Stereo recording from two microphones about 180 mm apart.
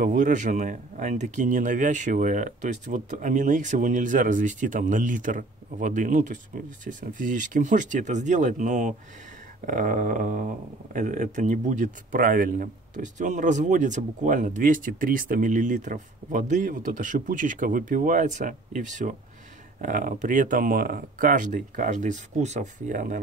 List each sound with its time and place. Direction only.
0.0 s speech: 45° right (ahead or behind)